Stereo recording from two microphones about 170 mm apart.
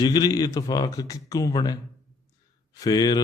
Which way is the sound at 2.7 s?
25° left (ahead or behind).